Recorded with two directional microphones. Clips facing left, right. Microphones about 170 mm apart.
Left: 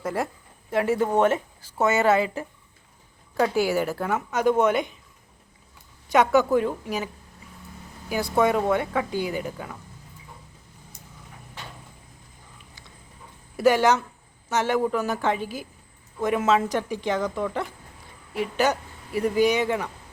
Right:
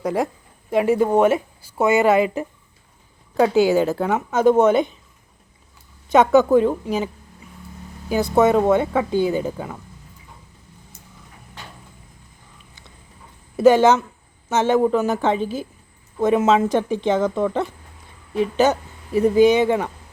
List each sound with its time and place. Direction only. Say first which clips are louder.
0.0 s a woman's voice: right 6 dB; 15° right (ahead or behind)
6.1 s speech: right 5 dB; 20° right (ahead or behind)
8.1 s speech: right 6 dB; 20° right (ahead or behind)
13.6 s speech: right 6 dB; 25° right (ahead or behind)